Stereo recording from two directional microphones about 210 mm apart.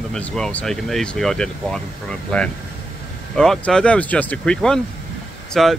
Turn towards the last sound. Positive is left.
turn(degrees=0)  # may be behind; listen again after turning